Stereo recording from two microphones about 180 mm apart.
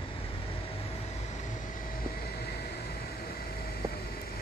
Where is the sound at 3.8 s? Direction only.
15° right (ahead or behind).